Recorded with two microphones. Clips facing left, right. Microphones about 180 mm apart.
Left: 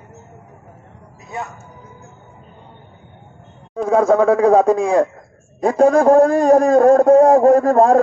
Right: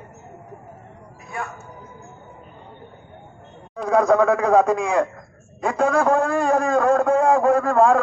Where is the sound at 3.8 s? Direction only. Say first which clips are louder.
Left 3 dB; 25° left (ahead or behind).